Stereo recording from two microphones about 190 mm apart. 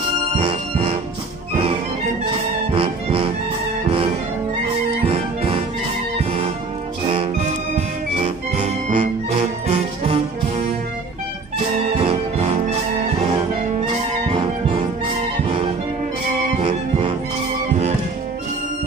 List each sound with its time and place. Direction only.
0.4 s music: 30° right (ahead or behind)
5.0 s music: 30° right (ahead or behind)
11.9 s music: 30° right (ahead or behind)
13.7 s brass instrument: 30° right (ahead or behind)
15.4 s music: 30° right (ahead or behind)